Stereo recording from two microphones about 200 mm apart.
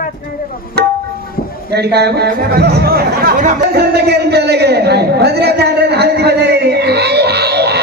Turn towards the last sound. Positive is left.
turn(degrees=-55)  # may be behind; listen again after turning